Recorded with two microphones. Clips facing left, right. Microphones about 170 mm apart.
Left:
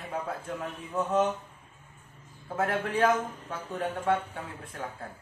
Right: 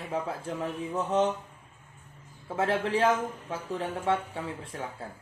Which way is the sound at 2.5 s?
30° right (ahead or behind).